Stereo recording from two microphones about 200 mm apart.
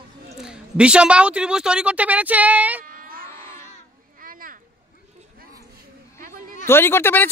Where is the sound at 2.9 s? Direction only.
45° right (ahead or behind).